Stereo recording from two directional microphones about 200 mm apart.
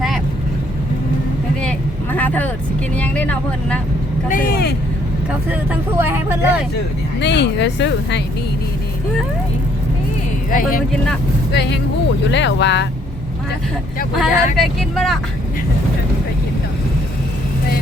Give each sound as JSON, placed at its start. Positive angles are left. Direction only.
{"t": 2.1, "sound": "vehicle", "side_deg": 10}
{"t": 2.9, "sound": "speech", "side_deg": 5}
{"t": 4.3, "sound": "speech", "side_deg": 45}
{"t": 6.0, "sound": "speech", "side_deg": -10}
{"t": 7.2, "sound": "speech", "side_deg": 60}
{"t": 10.5, "sound": "speech", "side_deg": 45}
{"t": 11.5, "sound": "speech", "side_deg": 55}
{"t": 14.2, "sound": "speech", "side_deg": 0}